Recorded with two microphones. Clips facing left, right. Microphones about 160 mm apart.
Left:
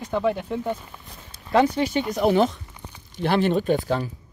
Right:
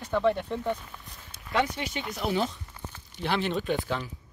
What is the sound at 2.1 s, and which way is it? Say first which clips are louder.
Speech: left 8 dB; 55° left (ahead or behind).